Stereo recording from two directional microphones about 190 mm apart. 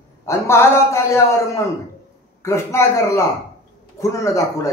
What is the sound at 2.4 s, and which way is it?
Speech, 15° left (ahead or behind).